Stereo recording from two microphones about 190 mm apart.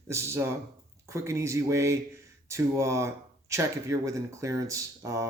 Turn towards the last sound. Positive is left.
turn(degrees=-15)  # may be behind; listen again after turning